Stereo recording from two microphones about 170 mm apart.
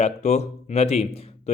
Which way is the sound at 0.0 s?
40° left (ahead or behind).